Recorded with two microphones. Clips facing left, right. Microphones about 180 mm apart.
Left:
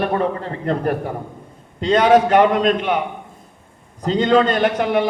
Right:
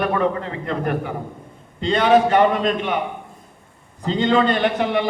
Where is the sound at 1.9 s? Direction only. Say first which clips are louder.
Left 2 dB; 45° left (ahead or behind).